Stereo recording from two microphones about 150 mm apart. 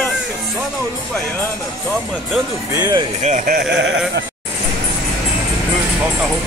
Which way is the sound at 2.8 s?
25° right (ahead or behind).